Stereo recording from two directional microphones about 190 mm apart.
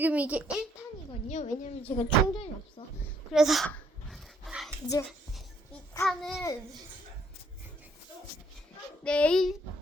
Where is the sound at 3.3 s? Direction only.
Centre (ahead or behind).